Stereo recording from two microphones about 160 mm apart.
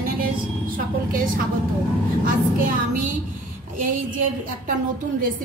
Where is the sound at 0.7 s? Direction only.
60° right (ahead or behind).